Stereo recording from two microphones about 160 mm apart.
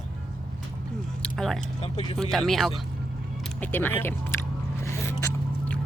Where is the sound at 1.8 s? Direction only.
35° left (ahead or behind).